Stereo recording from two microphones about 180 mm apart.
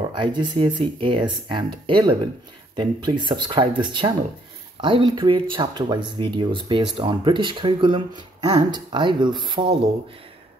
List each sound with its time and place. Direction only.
0.1 s speech: 25° right (ahead or behind)